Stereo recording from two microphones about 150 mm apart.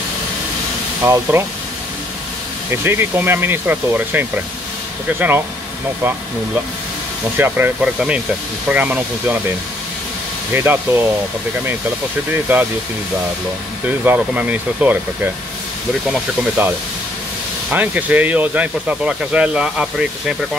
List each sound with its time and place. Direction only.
1.0 s speech: 15° right (ahead or behind)
2.7 s speech: 15° right (ahead or behind)
7.3 s speech: 15° right (ahead or behind)
10.5 s speech: 15° right (ahead or behind)
12.5 s speech: 15° right (ahead or behind)
13.8 s speech: 10° right (ahead or behind)